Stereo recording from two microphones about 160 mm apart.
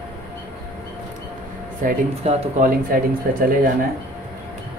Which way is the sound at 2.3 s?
40° right (ahead or behind).